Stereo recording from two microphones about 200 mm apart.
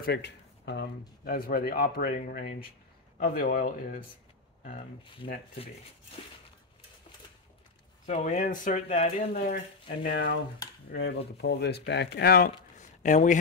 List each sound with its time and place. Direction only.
0.0 s speech: 55° left (ahead or behind)
8.1 s speech: 35° left (ahead or behind)
9.3 s speech: 40° left (ahead or behind)
10.9 s dishes: 60° left (ahead or behind)
11.4 s speech: 60° left (ahead or behind); by 13.4 s 40° left (ahead or behind)